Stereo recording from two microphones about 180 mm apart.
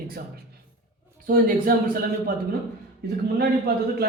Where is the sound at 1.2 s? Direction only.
50° right (ahead or behind).